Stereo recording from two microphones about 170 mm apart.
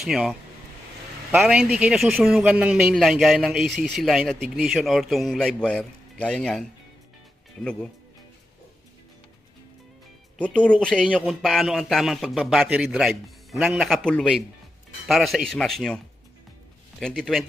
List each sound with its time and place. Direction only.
0.0 s a man's voice: centre (ahead or behind)
10.3 s a man's voice: 5° left (ahead or behind)
17.0 s a man's voice: 5° left (ahead or behind)